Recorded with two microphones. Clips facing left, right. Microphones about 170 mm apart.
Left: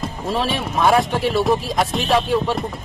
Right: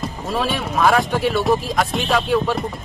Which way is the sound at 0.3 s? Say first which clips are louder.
Even; centre (ahead or behind).